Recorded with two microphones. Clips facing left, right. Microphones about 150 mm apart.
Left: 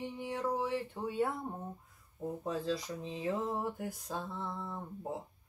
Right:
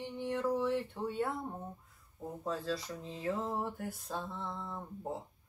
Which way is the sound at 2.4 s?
15° left (ahead or behind).